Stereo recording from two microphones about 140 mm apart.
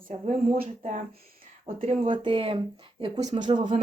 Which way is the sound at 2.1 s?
40° right (ahead or behind).